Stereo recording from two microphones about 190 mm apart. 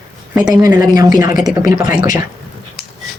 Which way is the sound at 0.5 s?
20° right (ahead or behind).